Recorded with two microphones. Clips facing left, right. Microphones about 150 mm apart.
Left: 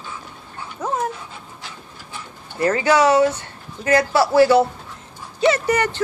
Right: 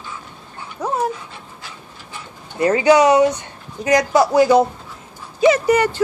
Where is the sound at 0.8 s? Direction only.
10° right (ahead or behind).